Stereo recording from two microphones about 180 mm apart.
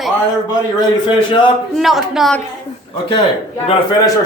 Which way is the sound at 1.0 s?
25° left (ahead or behind).